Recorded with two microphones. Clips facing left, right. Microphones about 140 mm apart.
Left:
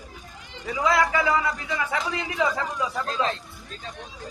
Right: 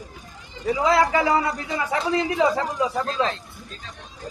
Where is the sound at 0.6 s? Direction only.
30° right (ahead or behind).